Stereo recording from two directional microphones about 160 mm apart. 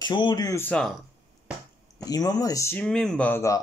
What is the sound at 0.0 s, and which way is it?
Speech, 30° left (ahead or behind).